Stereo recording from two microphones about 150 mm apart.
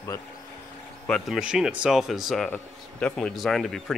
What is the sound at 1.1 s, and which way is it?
Speech, centre (ahead or behind).